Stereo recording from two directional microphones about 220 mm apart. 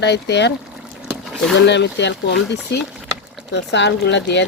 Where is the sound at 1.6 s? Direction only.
50° left (ahead or behind).